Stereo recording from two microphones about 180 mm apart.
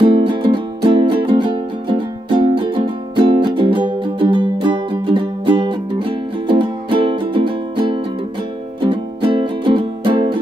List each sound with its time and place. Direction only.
0.0 s music: 25° right (ahead or behind)